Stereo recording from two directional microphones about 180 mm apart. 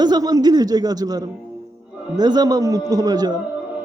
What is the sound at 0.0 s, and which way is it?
A man's voice, 20° right (ahead or behind).